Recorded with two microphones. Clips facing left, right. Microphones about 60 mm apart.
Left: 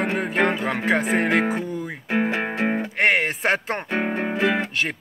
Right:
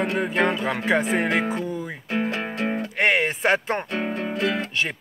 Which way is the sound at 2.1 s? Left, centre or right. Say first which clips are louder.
Left 3 dB; left.